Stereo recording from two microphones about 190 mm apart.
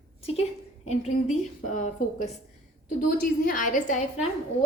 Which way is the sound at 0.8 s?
40° left (ahead or behind).